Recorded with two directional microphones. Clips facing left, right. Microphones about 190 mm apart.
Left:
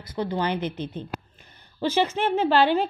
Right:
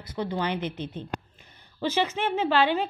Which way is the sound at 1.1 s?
5° left (ahead or behind).